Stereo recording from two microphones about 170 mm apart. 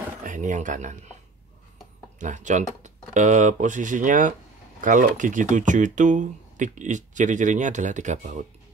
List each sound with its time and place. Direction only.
0.2 s speech: 50° right (ahead or behind)
2.1 s speech: 45° right (ahead or behind)